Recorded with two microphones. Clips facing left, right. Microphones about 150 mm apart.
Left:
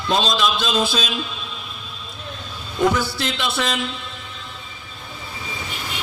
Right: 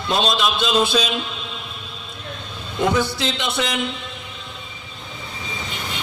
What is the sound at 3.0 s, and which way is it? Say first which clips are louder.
Speech: right 1 dB; 20° right (ahead or behind).